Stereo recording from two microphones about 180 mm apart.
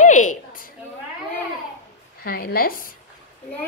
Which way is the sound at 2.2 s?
55° left (ahead or behind).